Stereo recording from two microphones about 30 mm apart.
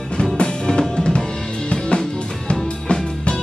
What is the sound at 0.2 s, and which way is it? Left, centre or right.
Music, left.